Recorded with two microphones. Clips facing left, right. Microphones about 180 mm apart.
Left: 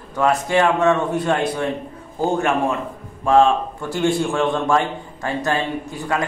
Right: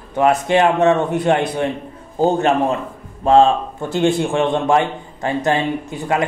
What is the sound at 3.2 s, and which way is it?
A man's voice, 25° right (ahead or behind).